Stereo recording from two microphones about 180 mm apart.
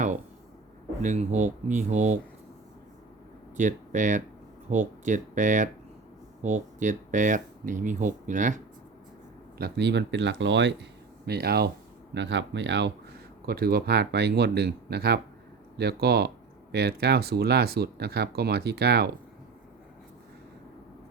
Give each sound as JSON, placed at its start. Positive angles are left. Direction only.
{"t": 1.0, "sound": "speech", "side_deg": -40}
{"t": 3.6, "sound": "speech", "side_deg": -45}
{"t": 9.6, "sound": "speech", "side_deg": -65}
{"t": 11.3, "sound": "speech", "side_deg": -60}
{"t": 12.1, "sound": "speech", "side_deg": -80}
{"t": 13.4, "sound": "speech", "side_deg": -60}